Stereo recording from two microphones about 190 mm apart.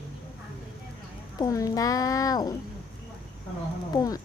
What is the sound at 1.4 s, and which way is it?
A child's voice, 20° left (ahead or behind).